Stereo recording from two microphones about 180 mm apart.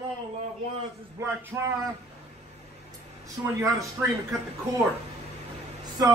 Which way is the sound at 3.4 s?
15° right (ahead or behind).